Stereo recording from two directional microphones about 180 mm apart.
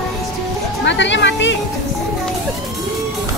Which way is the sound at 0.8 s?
80° left.